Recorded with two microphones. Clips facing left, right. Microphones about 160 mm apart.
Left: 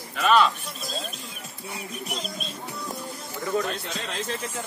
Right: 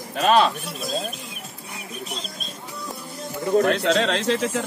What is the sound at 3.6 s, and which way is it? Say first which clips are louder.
Speech: right 12 dB; 75° right (ahead or behind).